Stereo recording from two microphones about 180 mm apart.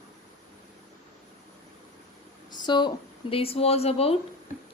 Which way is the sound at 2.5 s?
25° left (ahead or behind).